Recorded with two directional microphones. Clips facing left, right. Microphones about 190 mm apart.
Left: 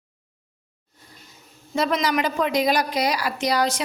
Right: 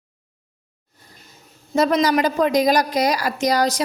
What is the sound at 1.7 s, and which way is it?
A woman's voice, 40° right (ahead or behind).